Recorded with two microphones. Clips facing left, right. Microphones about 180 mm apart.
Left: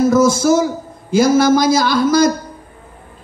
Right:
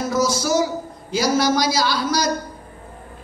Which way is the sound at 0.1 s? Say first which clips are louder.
Left 8 dB; 50° left (ahead or behind).